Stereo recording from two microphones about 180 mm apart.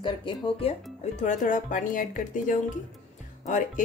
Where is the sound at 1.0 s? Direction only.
40° left (ahead or behind).